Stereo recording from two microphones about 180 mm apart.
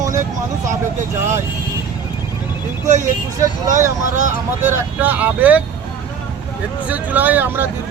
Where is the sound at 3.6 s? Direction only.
20° right (ahead or behind).